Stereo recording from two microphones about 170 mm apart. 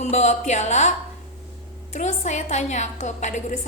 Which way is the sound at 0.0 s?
45° left (ahead or behind).